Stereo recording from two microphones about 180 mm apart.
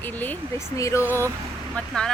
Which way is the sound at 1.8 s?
5° left (ahead or behind).